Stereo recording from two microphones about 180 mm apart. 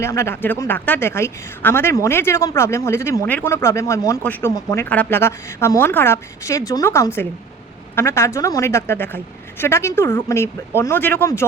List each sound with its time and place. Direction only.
0.0 s a woman's voice: 15° left (ahead or behind)